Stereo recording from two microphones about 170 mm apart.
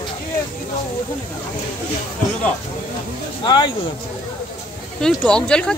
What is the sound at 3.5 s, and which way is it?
Speech, 25° left (ahead or behind).